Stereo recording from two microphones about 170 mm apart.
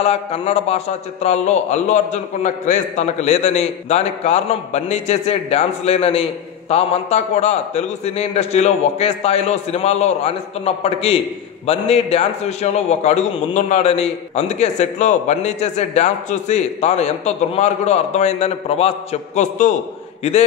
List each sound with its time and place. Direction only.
0.0 s a man's voice: 35° left (ahead or behind)